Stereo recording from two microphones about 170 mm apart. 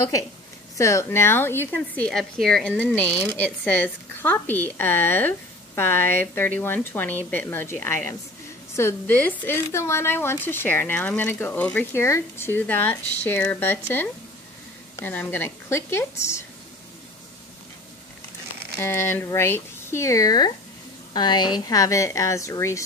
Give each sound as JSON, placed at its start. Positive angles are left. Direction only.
{"t": 0.7, "sound": "speech", "side_deg": 20}
{"t": 18.8, "sound": "a woman's voice", "side_deg": 15}